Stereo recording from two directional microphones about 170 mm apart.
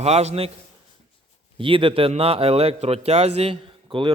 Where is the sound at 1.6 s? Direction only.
30° right (ahead or behind).